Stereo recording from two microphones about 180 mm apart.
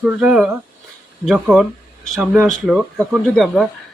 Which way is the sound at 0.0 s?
5° right (ahead or behind).